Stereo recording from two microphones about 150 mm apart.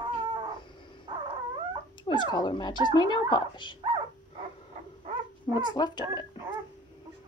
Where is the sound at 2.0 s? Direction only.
30° left (ahead or behind).